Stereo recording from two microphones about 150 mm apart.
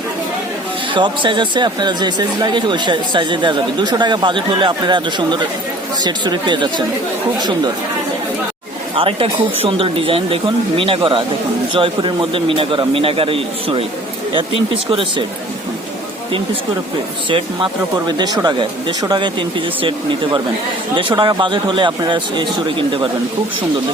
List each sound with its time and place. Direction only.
0.9 s speech: 30° right (ahead or behind)
9.0 s speech: 40° right (ahead or behind)
17.2 s speech: 35° right (ahead or behind)
20.9 s speech: 30° right (ahead or behind)